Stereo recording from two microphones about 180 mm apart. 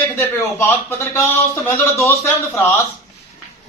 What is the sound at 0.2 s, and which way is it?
Speech, 15° left (ahead or behind).